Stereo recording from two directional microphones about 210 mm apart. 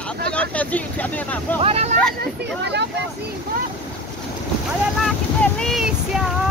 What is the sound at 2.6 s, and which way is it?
Speech, 55° right (ahead or behind).